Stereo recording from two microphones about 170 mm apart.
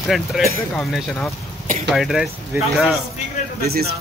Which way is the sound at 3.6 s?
65° right (ahead or behind).